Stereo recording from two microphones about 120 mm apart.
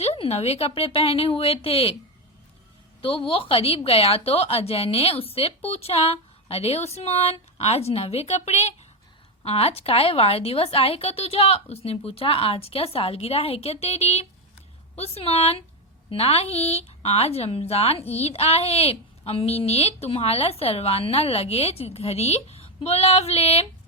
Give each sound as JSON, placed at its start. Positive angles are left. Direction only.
{"t": 0.0, "sound": "speech", "side_deg": 55}
{"t": 3.0, "sound": "a woman's voice", "side_deg": 50}